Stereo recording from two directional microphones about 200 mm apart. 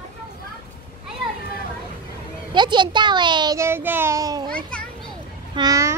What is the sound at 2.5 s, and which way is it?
A child's voice, 25° right (ahead or behind).